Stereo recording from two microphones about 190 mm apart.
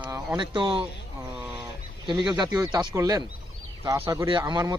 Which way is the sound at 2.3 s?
20° right (ahead or behind).